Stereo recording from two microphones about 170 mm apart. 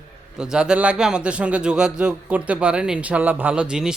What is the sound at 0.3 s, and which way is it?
A man's voice, 5° right (ahead or behind).